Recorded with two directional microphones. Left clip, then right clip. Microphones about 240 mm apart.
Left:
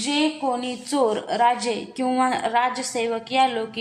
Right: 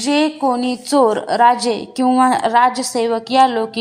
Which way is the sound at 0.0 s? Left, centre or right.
Right.